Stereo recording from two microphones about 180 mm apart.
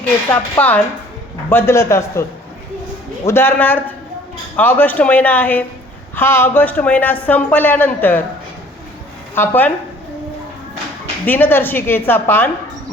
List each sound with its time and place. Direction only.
0.3 s speech: 10° left (ahead or behind)
3.2 s speech: 10° left (ahead or behind)
9.3 s speech: 10° left (ahead or behind)
11.3 s speech: 10° left (ahead or behind)